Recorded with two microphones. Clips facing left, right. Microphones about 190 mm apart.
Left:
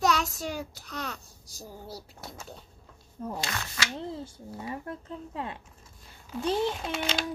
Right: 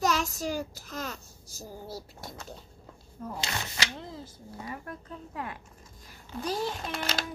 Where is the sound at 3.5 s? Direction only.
30° right (ahead or behind).